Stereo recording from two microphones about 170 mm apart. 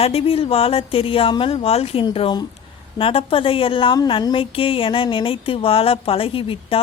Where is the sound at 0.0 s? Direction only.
35° left (ahead or behind).